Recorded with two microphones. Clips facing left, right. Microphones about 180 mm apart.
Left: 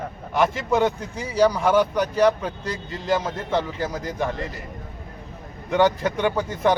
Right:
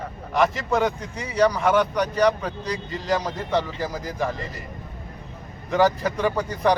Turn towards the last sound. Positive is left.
turn(degrees=0)  # may be behind; listen again after turning